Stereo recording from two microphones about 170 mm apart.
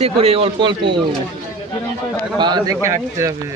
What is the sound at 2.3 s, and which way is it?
A man's voice, 25° right (ahead or behind).